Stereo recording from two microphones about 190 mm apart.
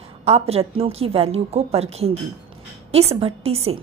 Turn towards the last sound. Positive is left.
turn(degrees=-30)  # may be behind; listen again after turning